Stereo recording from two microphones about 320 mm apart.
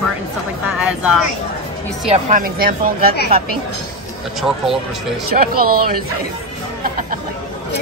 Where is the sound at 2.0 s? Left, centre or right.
Right.